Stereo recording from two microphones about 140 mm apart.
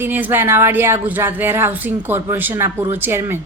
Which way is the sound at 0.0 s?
15° right (ahead or behind).